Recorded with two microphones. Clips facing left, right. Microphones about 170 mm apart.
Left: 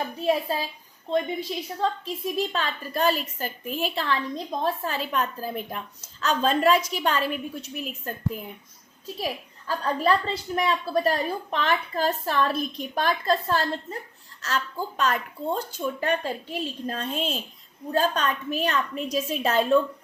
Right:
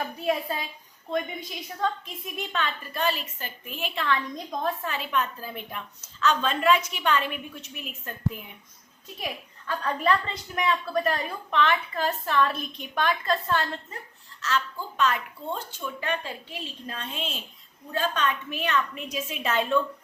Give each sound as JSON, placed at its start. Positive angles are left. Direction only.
{"t": 0.2, "sound": "a woman's voice", "side_deg": 30}